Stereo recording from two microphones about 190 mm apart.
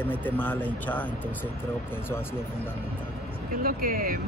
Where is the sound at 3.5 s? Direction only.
45° right (ahead or behind).